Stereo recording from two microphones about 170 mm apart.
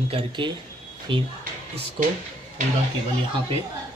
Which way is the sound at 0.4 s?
30° right (ahead or behind).